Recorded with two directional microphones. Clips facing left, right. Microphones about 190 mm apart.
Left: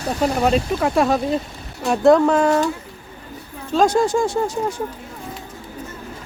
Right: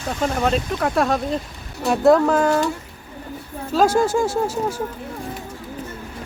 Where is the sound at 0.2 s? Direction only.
5° left (ahead or behind).